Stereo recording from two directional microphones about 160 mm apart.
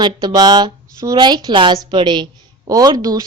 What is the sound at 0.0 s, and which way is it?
A woman's voice, 25° right (ahead or behind).